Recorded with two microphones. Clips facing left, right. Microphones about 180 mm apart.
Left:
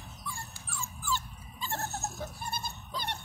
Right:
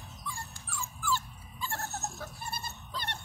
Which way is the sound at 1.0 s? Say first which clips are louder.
Right 2 dB; 20° left (ahead or behind).